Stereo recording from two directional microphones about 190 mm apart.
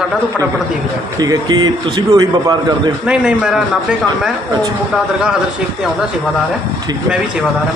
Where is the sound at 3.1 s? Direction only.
5° right (ahead or behind).